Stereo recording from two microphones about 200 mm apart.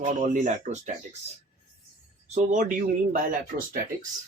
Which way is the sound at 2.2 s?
35° right (ahead or behind).